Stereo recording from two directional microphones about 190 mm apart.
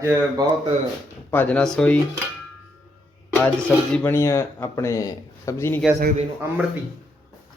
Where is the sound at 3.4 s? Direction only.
5° left (ahead or behind).